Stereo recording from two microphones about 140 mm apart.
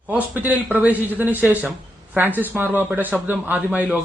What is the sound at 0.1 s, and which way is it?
A man's voice, 10° right (ahead or behind).